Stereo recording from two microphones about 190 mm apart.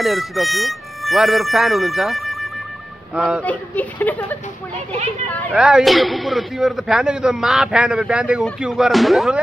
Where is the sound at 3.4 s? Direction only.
10° left (ahead or behind).